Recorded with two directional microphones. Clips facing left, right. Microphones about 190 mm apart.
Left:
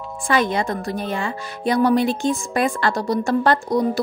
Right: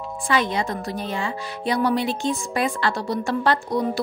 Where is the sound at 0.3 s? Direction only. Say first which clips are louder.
Left 3 dB; 50° left (ahead or behind).